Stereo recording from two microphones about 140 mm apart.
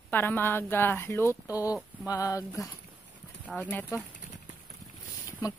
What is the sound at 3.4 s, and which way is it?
Speech, 10° left (ahead or behind).